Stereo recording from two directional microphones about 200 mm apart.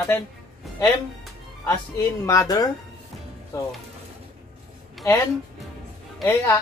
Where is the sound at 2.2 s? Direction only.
15° left (ahead or behind).